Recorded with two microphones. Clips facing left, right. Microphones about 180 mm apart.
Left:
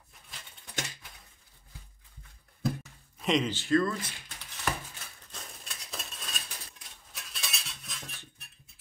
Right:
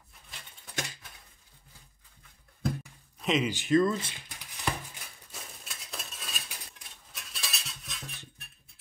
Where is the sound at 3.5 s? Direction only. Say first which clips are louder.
Right 2 dB; 15° right (ahead or behind).